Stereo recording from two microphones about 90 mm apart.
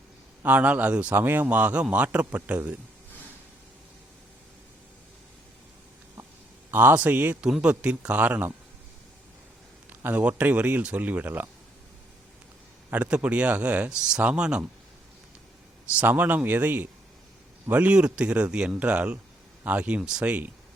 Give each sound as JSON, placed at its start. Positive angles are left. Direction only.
{"t": 0.4, "sound": "a man's voice", "side_deg": -20}
{"t": 6.7, "sound": "a man's voice", "side_deg": -20}
{"t": 10.0, "sound": "a man's voice", "side_deg": -20}
{"t": 12.9, "sound": "a man's voice", "side_deg": -15}
{"t": 16.0, "sound": "a man's voice", "side_deg": -20}